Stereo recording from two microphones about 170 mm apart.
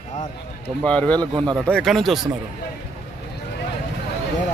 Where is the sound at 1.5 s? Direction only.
5° left (ahead or behind).